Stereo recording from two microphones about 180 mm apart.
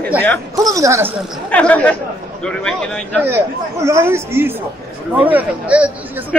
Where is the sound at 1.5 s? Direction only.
5° left (ahead or behind).